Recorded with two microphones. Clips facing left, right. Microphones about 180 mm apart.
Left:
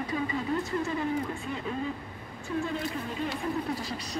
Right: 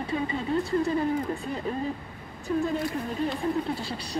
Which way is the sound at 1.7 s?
40° right (ahead or behind).